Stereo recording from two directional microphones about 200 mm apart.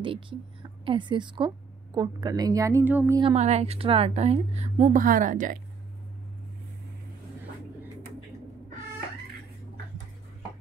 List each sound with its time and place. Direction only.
0.0 s a woman's voice: 25° right (ahead or behind); by 3.2 s 10° right (ahead or behind)
3.2 s a woman's voice: 30° right (ahead or behind)